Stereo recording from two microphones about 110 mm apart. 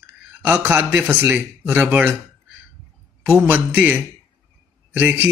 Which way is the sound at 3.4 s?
20° right (ahead or behind).